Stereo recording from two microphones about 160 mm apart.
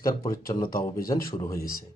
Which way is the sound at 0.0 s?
20° left (ahead or behind).